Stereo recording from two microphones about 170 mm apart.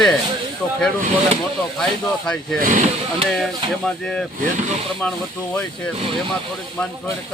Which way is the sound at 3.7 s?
Centre (ahead or behind).